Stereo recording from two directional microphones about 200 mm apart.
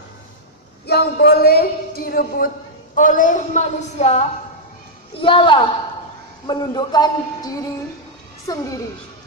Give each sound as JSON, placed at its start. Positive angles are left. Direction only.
{"t": 0.8, "sound": "a man's voice", "side_deg": 55}